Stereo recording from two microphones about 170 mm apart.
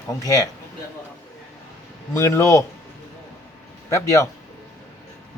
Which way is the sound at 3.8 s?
15° left (ahead or behind).